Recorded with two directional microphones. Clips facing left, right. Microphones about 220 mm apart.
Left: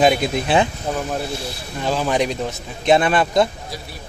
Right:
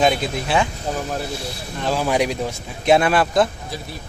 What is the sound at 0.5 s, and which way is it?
Speech, 20° left (ahead or behind).